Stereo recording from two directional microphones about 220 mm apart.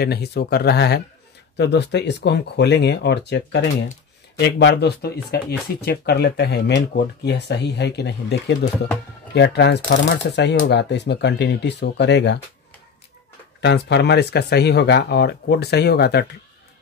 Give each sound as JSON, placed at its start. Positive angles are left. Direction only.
{"t": 0.0, "sound": "speech", "side_deg": 45}
{"t": 13.6, "sound": "speech", "side_deg": 50}